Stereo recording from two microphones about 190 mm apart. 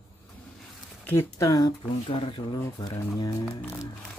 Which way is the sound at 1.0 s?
10° left (ahead or behind).